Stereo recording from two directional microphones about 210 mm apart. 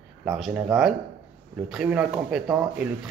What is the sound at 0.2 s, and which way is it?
Speech, centre (ahead or behind).